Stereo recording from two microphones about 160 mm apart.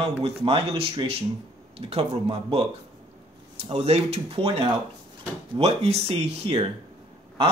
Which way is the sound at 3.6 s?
40° right (ahead or behind).